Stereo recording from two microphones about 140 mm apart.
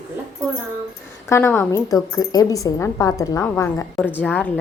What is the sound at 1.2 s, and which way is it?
A woman's voice, 15° left (ahead or behind).